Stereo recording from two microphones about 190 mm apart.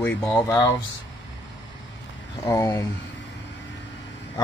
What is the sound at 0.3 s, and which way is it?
Speech, 15° left (ahead or behind).